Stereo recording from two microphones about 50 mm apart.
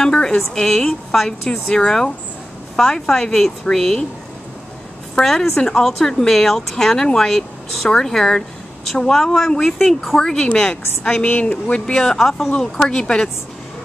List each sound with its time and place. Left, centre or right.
0.0 s a woman's voice: centre
5.2 s a woman's voice: centre
12.5 s a woman's voice: centre